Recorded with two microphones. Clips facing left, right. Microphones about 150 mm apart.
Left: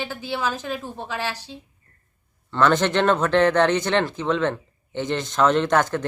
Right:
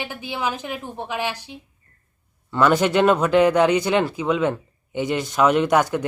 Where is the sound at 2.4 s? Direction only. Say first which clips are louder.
Right 1 dB; 10° right (ahead or behind).